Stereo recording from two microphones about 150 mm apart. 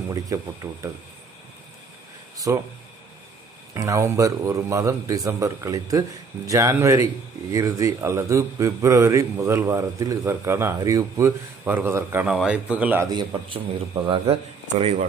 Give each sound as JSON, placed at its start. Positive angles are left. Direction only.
{"t": 0.1, "sound": "a man's voice", "side_deg": -25}
{"t": 2.3, "sound": "speech", "side_deg": -20}
{"t": 3.7, "sound": "a man's voice", "side_deg": -20}
{"t": 12.3, "sound": "speech", "side_deg": -5}
{"t": 13.1, "sound": "a man's voice", "side_deg": -30}